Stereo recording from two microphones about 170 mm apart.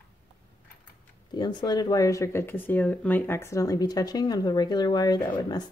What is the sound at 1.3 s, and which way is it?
Speech, 25° left (ahead or behind).